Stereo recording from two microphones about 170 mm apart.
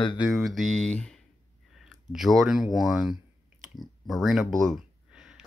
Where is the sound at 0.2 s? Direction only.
Centre (ahead or behind).